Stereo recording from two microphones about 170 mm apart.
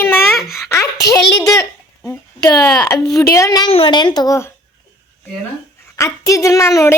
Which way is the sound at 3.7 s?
30° left (ahead or behind).